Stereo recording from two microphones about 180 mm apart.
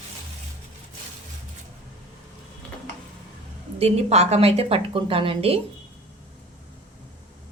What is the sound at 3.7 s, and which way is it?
A woman's voice, 35° right (ahead or behind).